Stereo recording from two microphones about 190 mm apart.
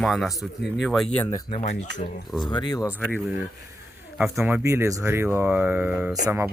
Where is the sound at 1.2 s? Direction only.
25° left (ahead or behind).